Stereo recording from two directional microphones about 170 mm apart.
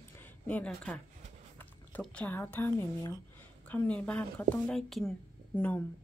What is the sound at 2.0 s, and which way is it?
A woman's voice, 10° left (ahead or behind).